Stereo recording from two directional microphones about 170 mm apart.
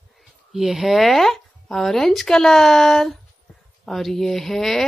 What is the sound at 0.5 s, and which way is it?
Speech, centre (ahead or behind).